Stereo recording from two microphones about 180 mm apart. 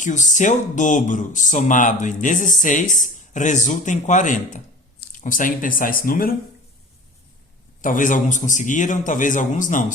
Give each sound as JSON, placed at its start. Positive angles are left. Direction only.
{"t": 0.0, "sound": "speech", "side_deg": 45}
{"t": 7.8, "sound": "speech", "side_deg": 45}